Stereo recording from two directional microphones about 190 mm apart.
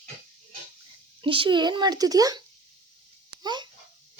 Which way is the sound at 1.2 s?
25° right (ahead or behind).